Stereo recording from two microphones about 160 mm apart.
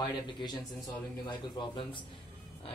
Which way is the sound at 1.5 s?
30° left (ahead or behind).